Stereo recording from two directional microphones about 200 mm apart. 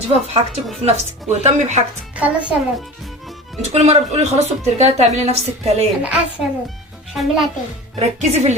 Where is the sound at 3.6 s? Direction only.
35° right (ahead or behind).